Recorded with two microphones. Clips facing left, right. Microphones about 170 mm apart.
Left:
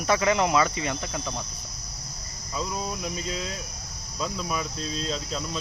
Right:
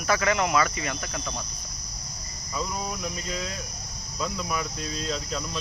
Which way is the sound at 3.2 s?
Centre (ahead or behind).